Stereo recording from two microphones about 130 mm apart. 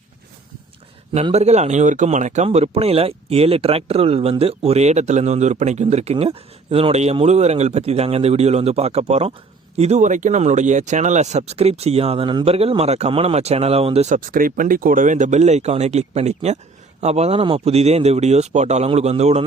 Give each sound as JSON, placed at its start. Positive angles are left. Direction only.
{"t": 1.2, "sound": "speech", "side_deg": -55}
{"t": 12.5, "sound": "a man's voice", "side_deg": -50}